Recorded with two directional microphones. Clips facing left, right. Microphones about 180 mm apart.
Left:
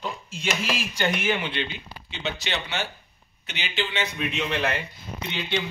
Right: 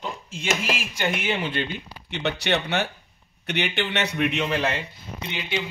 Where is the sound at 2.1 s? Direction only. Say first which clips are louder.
Right 6 dB; 65° right (ahead or behind).